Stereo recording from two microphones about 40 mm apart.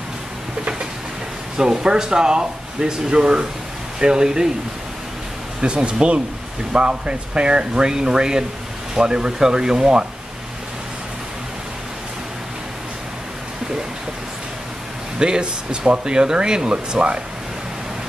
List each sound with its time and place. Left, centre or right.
1.6 s speech: centre
5.6 s speech: right
15.1 s speech: centre